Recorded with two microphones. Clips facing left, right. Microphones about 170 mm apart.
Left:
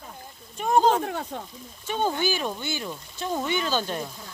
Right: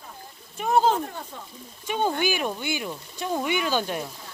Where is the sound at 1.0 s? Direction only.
65° left (ahead or behind).